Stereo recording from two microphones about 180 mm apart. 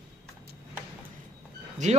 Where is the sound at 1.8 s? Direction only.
40° right (ahead or behind).